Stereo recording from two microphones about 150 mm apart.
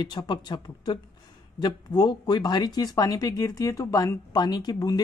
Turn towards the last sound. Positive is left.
turn(degrees=25)  # may be behind; listen again after turning